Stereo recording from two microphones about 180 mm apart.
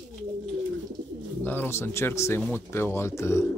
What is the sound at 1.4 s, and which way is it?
Speech, 10° left (ahead or behind).